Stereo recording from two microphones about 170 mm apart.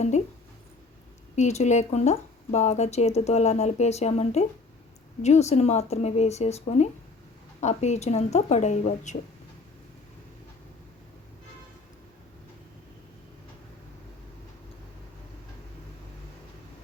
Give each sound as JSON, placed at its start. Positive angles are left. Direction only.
{"t": 1.4, "sound": "speech", "side_deg": 45}